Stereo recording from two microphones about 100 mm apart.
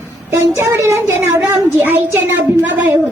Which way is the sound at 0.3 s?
25° right (ahead or behind).